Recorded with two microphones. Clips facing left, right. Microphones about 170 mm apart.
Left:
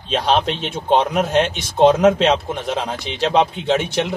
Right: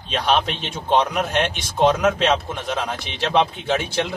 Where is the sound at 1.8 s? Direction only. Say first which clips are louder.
Left 5 dB; 20° left (ahead or behind).